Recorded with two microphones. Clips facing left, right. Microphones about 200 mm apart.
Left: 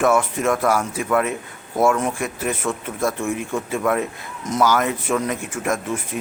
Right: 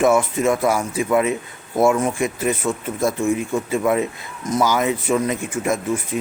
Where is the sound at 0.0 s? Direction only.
10° right (ahead or behind).